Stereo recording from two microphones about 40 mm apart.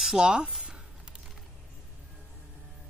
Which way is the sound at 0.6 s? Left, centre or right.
Centre.